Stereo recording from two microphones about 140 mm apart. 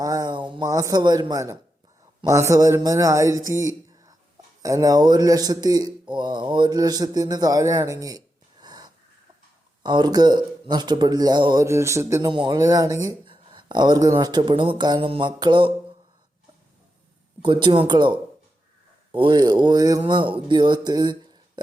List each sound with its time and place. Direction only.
0.0 s a sound: 25° right (ahead or behind)
0.7 s speech: 25° right (ahead or behind)
3.6 s a sound: 25° right (ahead or behind)
4.6 s speech: 25° right (ahead or behind)
8.6 s wheeze: 30° right (ahead or behind)
9.8 s speech: 30° right (ahead or behind)
11.6 s speech: 20° right (ahead or behind)
12.3 s speech: 30° right (ahead or behind)
13.2 s speech: 35° right (ahead or behind)
17.4 s speech: 35° right (ahead or behind)
20.8 s a sound: 30° right (ahead or behind)